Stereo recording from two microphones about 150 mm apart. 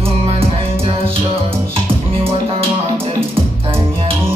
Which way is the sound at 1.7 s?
40° right (ahead or behind).